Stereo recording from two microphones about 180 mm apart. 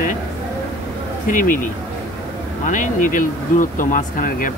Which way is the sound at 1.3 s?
45° left (ahead or behind).